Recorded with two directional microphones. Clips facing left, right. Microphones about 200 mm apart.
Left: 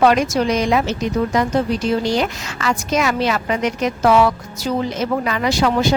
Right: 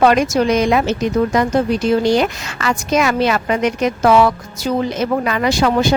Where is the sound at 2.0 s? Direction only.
60° right (ahead or behind).